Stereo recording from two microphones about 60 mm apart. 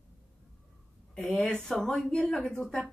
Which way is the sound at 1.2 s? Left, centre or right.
Left.